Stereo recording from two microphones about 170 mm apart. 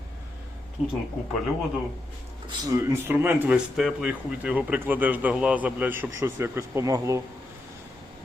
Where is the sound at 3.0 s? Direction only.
10° right (ahead or behind).